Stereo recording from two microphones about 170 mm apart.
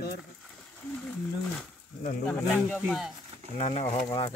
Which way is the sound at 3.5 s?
40° left (ahead or behind).